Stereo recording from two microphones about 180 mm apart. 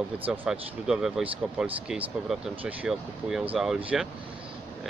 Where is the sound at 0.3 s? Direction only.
5° right (ahead or behind).